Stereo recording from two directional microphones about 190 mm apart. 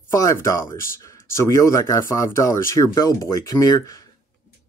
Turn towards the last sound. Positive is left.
turn(degrees=20)  # may be behind; listen again after turning